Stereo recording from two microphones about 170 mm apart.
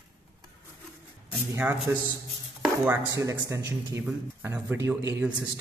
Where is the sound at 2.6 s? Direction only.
10° right (ahead or behind).